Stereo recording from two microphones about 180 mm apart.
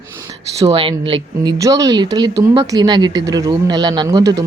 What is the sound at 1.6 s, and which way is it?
Speech, 20° right (ahead or behind).